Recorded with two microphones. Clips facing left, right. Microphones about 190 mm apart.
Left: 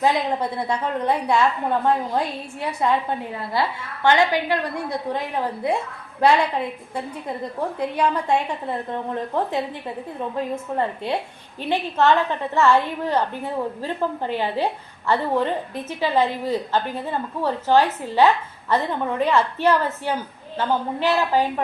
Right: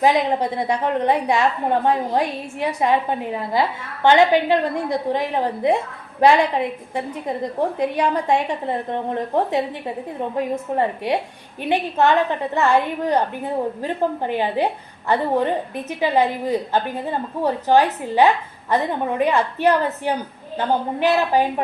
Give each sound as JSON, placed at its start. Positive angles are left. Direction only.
{"t": 0.0, "sound": "a woman's voice", "side_deg": -20}